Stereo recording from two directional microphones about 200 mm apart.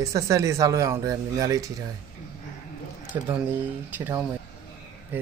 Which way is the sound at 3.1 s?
15° right (ahead or behind).